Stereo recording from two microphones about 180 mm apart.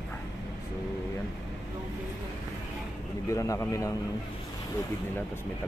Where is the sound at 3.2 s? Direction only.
15° left (ahead or behind).